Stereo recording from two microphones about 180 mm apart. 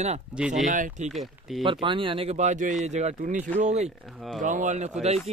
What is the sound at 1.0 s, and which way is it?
Speech, centre (ahead or behind).